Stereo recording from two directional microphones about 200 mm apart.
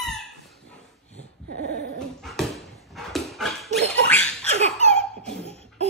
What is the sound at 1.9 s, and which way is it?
Dog, centre (ahead or behind).